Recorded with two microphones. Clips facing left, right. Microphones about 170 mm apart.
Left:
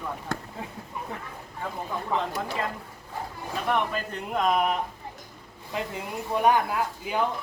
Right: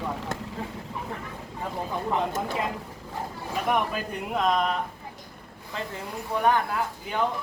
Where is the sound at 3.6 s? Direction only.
10° right (ahead or behind); by 4.7 s 5° left (ahead or behind).